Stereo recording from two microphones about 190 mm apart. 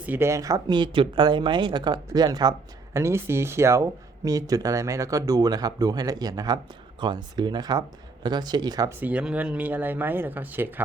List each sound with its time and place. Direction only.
0.0 s speech: 10° right (ahead or behind)
9.0 s speech: 10° right (ahead or behind)